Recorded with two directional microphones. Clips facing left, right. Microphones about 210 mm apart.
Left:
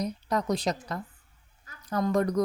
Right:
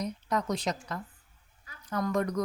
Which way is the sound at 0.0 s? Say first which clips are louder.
Left 2 dB; 35° left (ahead or behind).